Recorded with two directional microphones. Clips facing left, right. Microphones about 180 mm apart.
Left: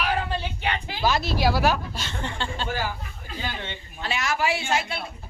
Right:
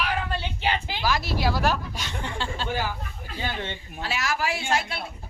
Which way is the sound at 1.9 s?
15° right (ahead or behind).